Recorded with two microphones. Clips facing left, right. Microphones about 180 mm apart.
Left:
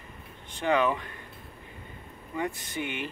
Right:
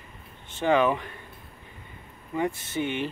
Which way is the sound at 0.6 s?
20° right (ahead or behind).